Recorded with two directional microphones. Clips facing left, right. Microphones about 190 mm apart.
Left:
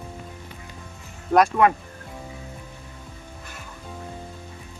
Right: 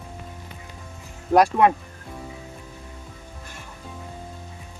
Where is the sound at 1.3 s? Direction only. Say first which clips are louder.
Right 1 dB; 25° right (ahead or behind).